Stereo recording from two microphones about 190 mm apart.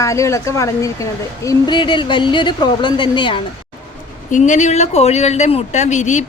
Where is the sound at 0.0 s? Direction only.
15° left (ahead or behind).